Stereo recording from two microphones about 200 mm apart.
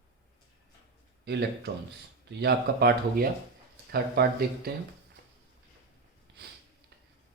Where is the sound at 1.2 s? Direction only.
55° right (ahead or behind).